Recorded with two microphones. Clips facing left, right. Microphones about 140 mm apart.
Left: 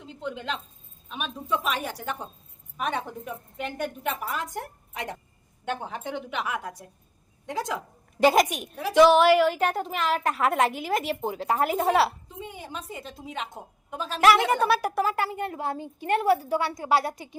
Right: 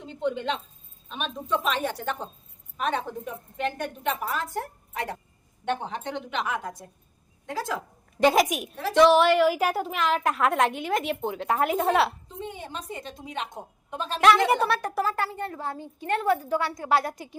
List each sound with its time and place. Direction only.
0.0 s a woman's voice: centre (ahead or behind); by 5.1 s 20° left (ahead or behind)
5.6 s a woman's voice: 5° left (ahead or behind)
8.2 s a woman's voice: centre (ahead or behind)
8.8 s a woman's voice: 5° left (ahead or behind)